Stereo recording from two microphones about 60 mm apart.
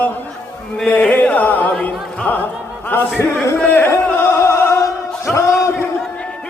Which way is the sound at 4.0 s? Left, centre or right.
Left.